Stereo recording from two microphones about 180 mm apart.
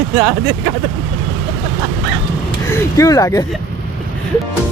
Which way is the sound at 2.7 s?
20° left (ahead or behind).